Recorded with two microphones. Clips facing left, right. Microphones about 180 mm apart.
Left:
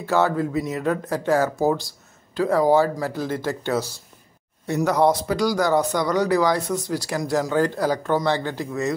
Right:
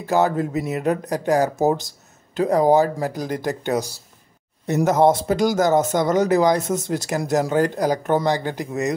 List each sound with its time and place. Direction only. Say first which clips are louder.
0.0 s speech: right 1 dB; 15° right (ahead or behind)